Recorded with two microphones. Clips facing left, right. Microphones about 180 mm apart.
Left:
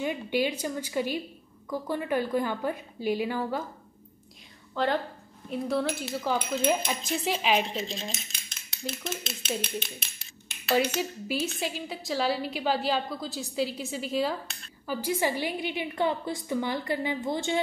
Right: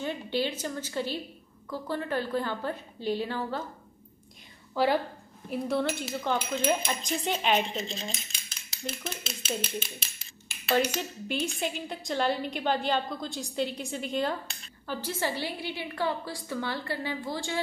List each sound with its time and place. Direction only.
0.0 s a woman's voice: 15° left (ahead or behind)
4.7 s speech: 10° right (ahead or behind)
5.5 s coin: centre (ahead or behind)
15.0 s a woman's voice: 15° left (ahead or behind)